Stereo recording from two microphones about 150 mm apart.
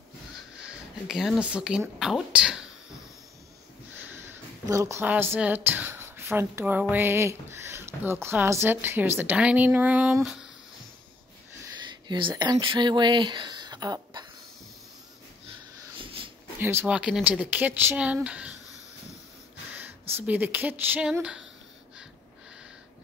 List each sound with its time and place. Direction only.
1.0 s speech: centre (ahead or behind)
4.3 s speech: 20° right (ahead or behind); by 10.5 s 5° right (ahead or behind)
12.1 s speech: 30° right (ahead or behind)
16.0 s dog: 35° right (ahead or behind)
16.5 s speech: 15° right (ahead or behind)
19.8 s a sound: 15° right (ahead or behind)